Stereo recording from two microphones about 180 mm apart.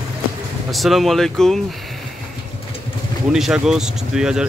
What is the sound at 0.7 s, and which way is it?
Speech, centre (ahead or behind).